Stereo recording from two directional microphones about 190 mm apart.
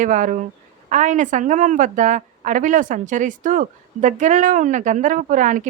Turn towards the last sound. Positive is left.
turn(degrees=-40)  # may be behind; listen again after turning